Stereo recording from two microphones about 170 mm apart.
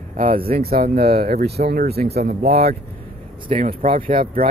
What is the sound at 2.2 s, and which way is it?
Speech, 65° right (ahead or behind).